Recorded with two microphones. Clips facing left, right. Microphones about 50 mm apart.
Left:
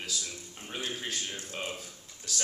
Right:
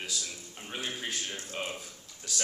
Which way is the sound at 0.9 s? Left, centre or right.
Centre.